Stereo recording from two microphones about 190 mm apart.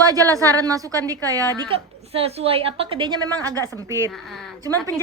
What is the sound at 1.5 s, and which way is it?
A woman's voice, 30° right (ahead or behind).